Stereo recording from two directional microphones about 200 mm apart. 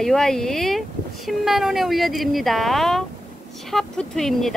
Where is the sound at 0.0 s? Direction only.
Centre (ahead or behind).